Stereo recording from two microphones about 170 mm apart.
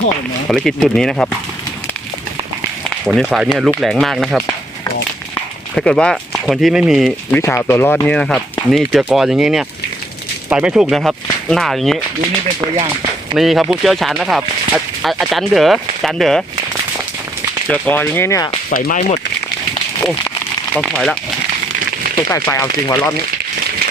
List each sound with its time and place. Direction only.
0.4 s speech: 5° left (ahead or behind)
3.1 s speech: centre (ahead or behind)
5.7 s speech: 5° left (ahead or behind)
7.3 s speech: 15° left (ahead or behind)
12.7 s speech: 30° right (ahead or behind)
13.3 s speech: centre (ahead or behind)
17.7 s speech: 10° left (ahead or behind)
18.7 s speech: 55° left (ahead or behind)
18.9 s speech: 40° left (ahead or behind)
20.7 s speech: 5° left (ahead or behind)
22.3 s speech: 15° left (ahead or behind)